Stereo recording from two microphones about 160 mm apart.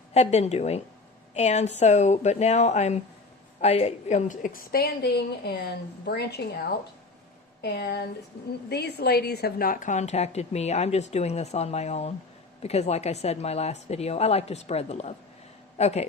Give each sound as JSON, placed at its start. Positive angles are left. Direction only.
{"t": 0.1, "sound": "a woman's voice", "side_deg": 40}